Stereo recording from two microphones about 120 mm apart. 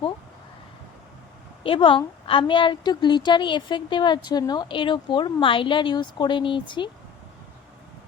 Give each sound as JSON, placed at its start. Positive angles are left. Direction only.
{"t": 1.6, "sound": "a woman's voice", "side_deg": 45}